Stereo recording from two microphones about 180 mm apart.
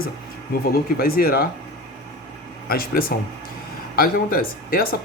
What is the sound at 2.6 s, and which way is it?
Speech, 55° left (ahead or behind).